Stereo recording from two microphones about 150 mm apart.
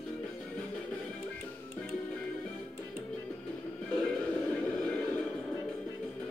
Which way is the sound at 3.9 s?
5° left (ahead or behind).